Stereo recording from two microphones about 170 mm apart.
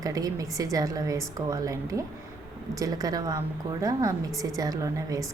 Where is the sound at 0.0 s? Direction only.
20° right (ahead or behind).